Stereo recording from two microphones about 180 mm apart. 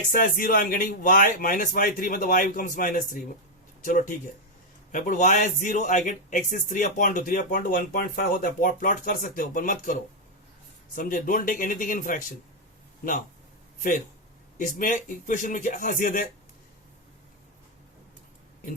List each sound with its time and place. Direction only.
0.1 s a man's voice: 50° left (ahead or behind)
14.6 s a man's voice: 45° left (ahead or behind)